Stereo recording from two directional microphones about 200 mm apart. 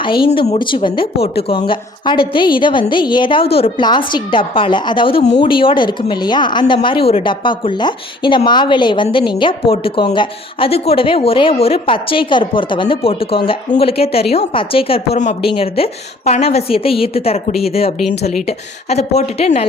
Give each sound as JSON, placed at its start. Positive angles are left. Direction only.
{"t": 0.0, "sound": "a woman's voice", "side_deg": 25}